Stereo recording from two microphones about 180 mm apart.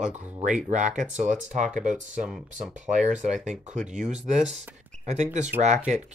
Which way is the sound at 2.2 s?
5° right (ahead or behind).